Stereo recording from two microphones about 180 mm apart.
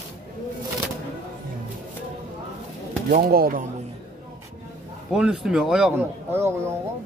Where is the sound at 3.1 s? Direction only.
55° right (ahead or behind).